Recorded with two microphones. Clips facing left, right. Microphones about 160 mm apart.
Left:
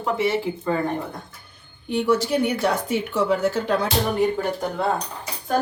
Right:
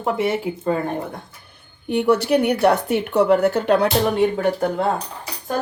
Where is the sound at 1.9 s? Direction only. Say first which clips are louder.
Right 4 dB; 60° right (ahead or behind).